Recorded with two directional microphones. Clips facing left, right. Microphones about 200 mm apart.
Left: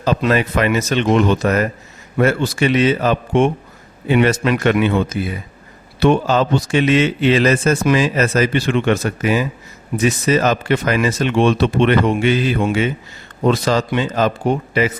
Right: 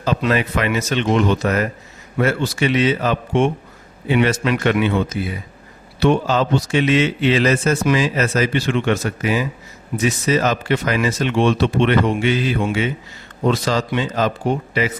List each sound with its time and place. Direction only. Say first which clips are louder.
0.0 s a man's voice: left 2 dB; 40° left (ahead or behind)
2.1 s a man's voice: left 3 dB; 50° left (ahead or behind)